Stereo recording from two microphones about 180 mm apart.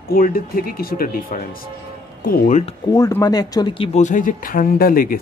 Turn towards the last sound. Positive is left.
turn(degrees=55)  # may be behind; listen again after turning